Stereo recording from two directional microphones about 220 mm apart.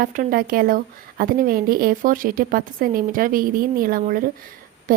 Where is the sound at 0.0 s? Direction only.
40° right (ahead or behind).